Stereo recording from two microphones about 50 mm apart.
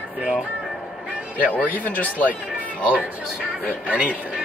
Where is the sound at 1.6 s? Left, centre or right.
Left.